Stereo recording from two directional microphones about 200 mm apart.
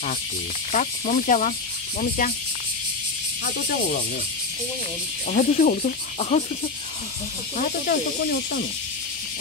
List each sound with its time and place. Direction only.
0.7 s cricket: 40° left (ahead or behind)
3.4 s snake: 45° left (ahead or behind)
5.3 s cricket: 40° left (ahead or behind)
7.5 s snake: 45° left (ahead or behind)